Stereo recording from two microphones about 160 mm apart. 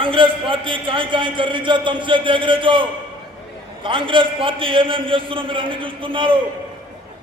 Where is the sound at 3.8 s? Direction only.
30° right (ahead or behind).